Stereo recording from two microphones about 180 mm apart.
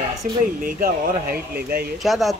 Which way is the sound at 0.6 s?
50° right (ahead or behind).